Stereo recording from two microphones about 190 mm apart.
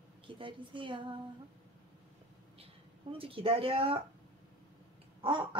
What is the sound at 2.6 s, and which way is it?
Speech, 30° right (ahead or behind).